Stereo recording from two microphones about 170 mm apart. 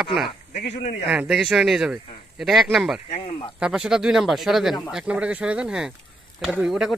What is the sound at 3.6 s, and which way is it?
Speech, 5° right (ahead or behind).